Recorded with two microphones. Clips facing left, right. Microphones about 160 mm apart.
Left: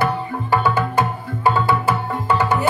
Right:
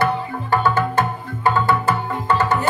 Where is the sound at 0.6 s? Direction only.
10° left (ahead or behind).